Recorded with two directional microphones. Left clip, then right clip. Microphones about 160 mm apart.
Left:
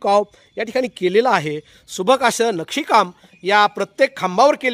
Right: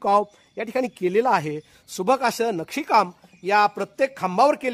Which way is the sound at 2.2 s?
15° left (ahead or behind).